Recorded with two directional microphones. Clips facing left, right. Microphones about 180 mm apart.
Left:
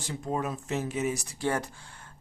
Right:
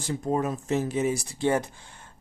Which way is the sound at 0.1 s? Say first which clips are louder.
Right 5 dB; 40° right (ahead or behind).